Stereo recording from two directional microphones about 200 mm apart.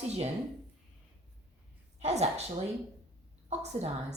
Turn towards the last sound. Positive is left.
turn(degrees=-35)  # may be behind; listen again after turning